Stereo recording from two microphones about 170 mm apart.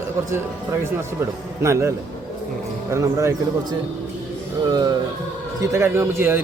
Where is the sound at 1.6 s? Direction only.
15° right (ahead or behind).